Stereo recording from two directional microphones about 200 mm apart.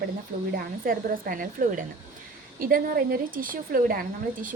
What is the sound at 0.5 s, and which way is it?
A woman's voice, 45° right (ahead or behind).